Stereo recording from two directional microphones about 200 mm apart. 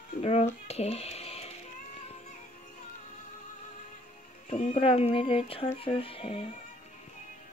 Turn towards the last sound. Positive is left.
turn(degrees=25)  # may be behind; listen again after turning